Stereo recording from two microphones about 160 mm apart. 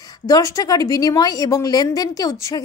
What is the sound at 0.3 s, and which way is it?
A woman's voice, 20° left (ahead or behind).